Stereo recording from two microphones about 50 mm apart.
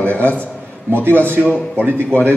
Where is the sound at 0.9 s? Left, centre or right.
Right.